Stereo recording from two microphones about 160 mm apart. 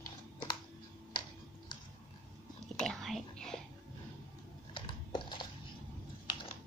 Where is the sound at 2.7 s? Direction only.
5° left (ahead or behind).